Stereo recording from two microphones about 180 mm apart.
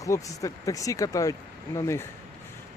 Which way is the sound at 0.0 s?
20° left (ahead or behind).